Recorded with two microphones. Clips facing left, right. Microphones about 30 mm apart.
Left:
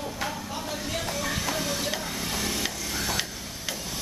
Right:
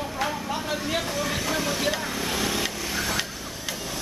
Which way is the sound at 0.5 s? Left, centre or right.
Right.